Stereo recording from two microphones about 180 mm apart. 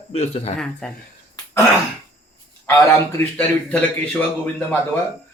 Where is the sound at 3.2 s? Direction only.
10° left (ahead or behind).